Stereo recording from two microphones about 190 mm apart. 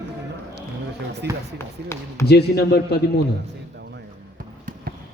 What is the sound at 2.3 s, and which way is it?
Speech, 60° left (ahead or behind).